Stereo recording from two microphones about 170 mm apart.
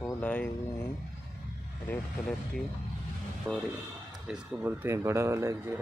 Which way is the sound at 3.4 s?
20° right (ahead or behind).